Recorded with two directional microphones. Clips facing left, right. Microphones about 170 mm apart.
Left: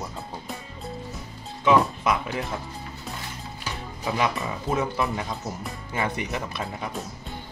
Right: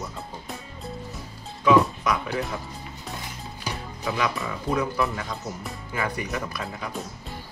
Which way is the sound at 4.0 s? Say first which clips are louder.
Left 1 dB; 25° left (ahead or behind).